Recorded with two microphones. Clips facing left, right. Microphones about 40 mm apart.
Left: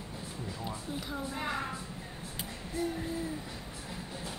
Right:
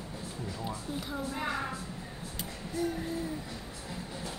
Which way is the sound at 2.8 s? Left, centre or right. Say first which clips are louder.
Right 2 dB; left.